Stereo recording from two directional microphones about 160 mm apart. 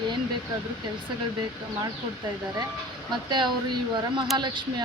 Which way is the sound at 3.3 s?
30° right (ahead or behind).